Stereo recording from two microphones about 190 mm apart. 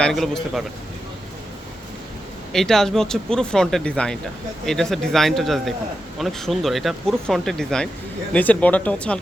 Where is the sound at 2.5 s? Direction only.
Centre (ahead or behind).